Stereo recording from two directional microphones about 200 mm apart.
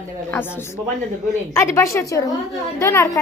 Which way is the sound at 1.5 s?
15° left (ahead or behind).